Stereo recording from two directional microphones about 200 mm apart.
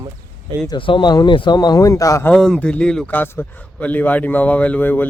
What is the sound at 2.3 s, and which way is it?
A man's voice, 5° left (ahead or behind).